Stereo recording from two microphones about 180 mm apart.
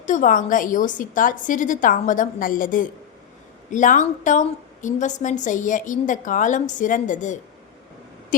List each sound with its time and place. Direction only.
0.0 s a woman's voice: 45° left (ahead or behind)